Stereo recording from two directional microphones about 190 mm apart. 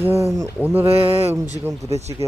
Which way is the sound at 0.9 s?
30° right (ahead or behind).